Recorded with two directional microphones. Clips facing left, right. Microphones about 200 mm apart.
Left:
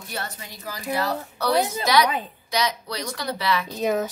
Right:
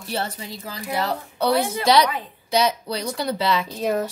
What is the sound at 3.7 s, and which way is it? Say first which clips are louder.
Speech: even; centre (ahead or behind).